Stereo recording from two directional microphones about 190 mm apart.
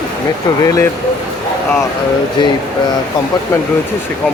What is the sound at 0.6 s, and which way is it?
Speech, 15° left (ahead or behind).